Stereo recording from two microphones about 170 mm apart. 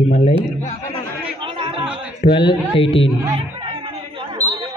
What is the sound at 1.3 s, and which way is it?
Chatter, 30° right (ahead or behind).